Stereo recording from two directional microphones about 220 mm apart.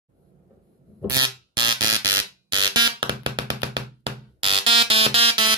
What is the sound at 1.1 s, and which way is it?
Fire alarm, 20° right (ahead or behind).